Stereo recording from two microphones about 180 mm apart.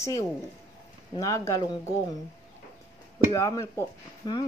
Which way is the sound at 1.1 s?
20° left (ahead or behind).